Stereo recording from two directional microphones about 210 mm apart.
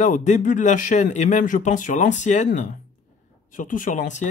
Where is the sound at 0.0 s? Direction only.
35° left (ahead or behind).